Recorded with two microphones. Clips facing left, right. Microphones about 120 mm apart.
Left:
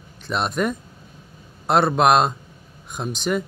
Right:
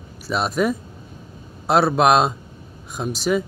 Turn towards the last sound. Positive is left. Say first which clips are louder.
# right 3 dB
turn(degrees=0)  # may be behind; listen again after turning